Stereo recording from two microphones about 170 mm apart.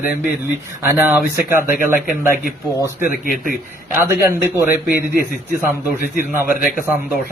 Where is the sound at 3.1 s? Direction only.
55° left (ahead or behind).